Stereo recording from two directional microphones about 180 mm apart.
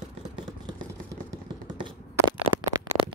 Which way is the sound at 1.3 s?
15° right (ahead or behind).